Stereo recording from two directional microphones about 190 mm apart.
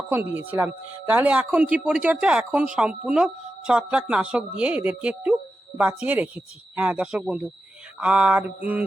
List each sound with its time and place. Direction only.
0.1 s speech: 10° right (ahead or behind)